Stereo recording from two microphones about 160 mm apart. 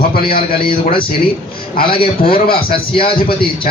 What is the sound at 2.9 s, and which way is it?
Speech, 35° left (ahead or behind).